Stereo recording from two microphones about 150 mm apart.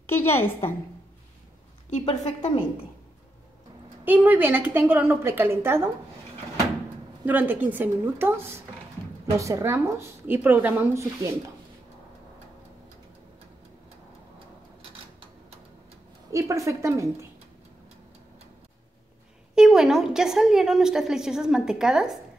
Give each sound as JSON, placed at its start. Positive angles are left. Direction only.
{"t": 0.0, "sound": "a woman's voice", "side_deg": 15}
{"t": 1.9, "sound": "a woman's voice", "side_deg": 50}
{"t": 4.0, "sound": "speech", "side_deg": -10}
{"t": 7.2, "sound": "speech", "side_deg": -10}
{"t": 16.3, "sound": "a woman's voice", "side_deg": -20}
{"t": 19.5, "sound": "a woman's voice", "side_deg": -5}